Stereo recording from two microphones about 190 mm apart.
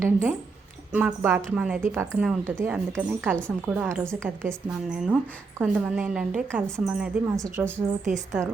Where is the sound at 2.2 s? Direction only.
5° right (ahead or behind).